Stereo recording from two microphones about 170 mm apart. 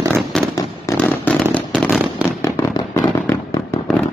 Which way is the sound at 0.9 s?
10° left (ahead or behind).